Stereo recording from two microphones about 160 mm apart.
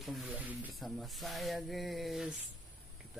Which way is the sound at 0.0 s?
Centre (ahead or behind).